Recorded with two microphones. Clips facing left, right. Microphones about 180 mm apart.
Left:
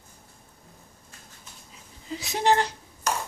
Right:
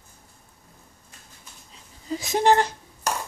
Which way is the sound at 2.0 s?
45° right (ahead or behind).